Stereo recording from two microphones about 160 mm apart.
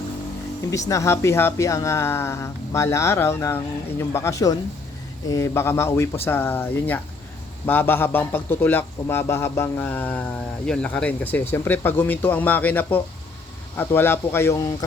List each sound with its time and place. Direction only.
0.7 s speech: 20° left (ahead or behind)